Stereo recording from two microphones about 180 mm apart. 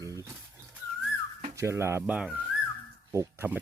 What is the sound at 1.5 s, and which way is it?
Speech, 15° right (ahead or behind).